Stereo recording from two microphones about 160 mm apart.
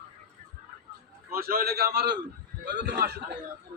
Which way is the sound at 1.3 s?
70° right (ahead or behind).